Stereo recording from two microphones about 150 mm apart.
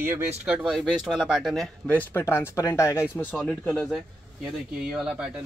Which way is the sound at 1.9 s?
15° left (ahead or behind).